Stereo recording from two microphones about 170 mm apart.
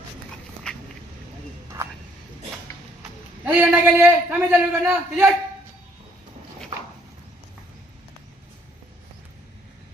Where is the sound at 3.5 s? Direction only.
10° right (ahead or behind).